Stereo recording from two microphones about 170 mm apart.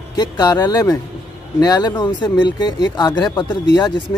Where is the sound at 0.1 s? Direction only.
25° left (ahead or behind).